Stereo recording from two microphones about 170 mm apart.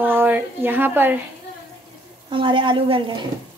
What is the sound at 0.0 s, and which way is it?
Speech, 10° right (ahead or behind).